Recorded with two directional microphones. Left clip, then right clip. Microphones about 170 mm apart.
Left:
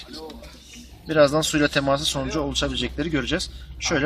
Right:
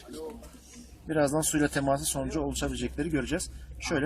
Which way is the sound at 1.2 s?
5° right (ahead or behind).